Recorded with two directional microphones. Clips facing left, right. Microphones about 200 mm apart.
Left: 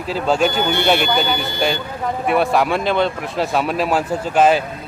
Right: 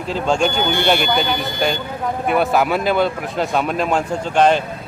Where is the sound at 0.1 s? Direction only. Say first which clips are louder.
Left 1 dB; 5° left (ahead or behind).